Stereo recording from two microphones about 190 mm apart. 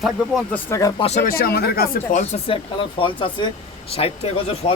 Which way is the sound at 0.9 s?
35° left (ahead or behind).